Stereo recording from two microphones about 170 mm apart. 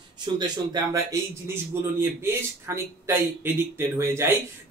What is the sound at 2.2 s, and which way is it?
Speech, 15° right (ahead or behind).